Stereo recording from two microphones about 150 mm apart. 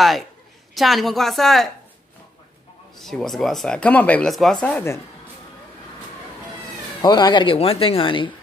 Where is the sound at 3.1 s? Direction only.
Centre (ahead or behind).